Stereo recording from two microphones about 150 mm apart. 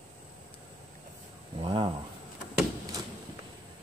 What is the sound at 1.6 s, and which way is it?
Speech, 35° right (ahead or behind).